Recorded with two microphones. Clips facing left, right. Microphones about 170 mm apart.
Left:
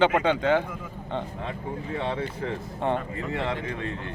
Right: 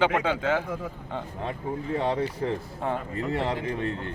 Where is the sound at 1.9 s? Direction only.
35° right (ahead or behind).